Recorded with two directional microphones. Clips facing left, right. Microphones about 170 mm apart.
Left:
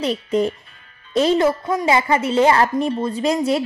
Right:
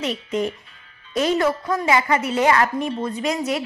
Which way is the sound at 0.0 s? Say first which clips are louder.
Left 4 dB; 35° left (ahead or behind).